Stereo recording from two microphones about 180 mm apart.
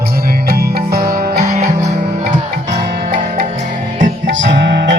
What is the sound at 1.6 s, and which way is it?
Music, 40° right (ahead or behind).